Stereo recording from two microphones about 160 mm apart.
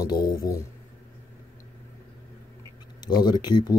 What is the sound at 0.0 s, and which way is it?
Speech, 25° left (ahead or behind).